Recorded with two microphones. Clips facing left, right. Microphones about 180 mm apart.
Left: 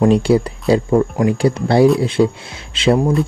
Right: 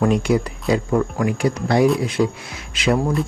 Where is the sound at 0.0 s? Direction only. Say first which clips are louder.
Left 5 dB; 30° left (ahead or behind).